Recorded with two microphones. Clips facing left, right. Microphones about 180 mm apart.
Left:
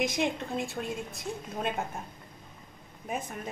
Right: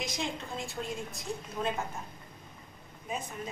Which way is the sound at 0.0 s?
55° left (ahead or behind).